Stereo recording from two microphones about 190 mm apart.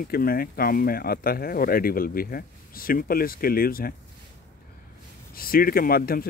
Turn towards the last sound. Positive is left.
turn(degrees=50)  # may be behind; listen again after turning